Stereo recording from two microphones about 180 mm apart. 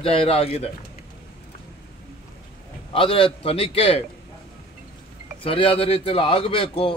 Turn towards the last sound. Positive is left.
turn(degrees=30)  # may be behind; listen again after turning